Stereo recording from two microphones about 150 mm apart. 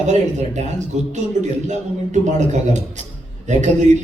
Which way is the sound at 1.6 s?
50° right (ahead or behind).